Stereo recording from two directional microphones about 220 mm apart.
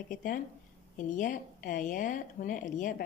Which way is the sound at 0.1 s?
35° left (ahead or behind).